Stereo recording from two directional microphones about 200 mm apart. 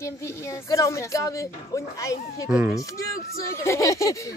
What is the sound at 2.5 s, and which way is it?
Speech, 5° right (ahead or behind).